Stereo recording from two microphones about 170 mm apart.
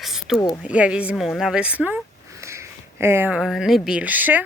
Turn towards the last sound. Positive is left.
turn(degrees=-10)  # may be behind; listen again after turning